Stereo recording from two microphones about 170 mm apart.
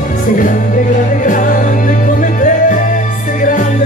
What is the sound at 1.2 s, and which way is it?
Music, 50° left (ahead or behind).